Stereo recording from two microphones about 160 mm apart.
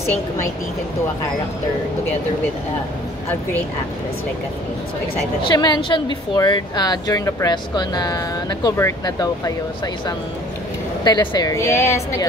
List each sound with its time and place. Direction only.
5.5 s speech: 25° left (ahead or behind)
11.1 s speech: 25° left (ahead or behind)